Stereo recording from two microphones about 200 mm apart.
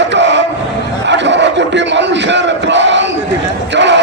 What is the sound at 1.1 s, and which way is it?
Battle cry, 65° right (ahead or behind).